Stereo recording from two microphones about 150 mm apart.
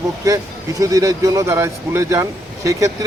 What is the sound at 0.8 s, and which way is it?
Speech, 20° right (ahead or behind).